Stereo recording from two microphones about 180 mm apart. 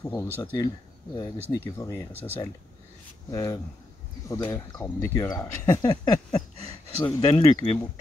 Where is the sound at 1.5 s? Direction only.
15° left (ahead or behind).